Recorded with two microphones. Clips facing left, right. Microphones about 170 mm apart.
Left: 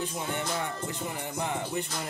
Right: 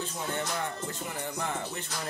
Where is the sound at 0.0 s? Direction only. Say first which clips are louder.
Left 1 dB; 15° left (ahead or behind).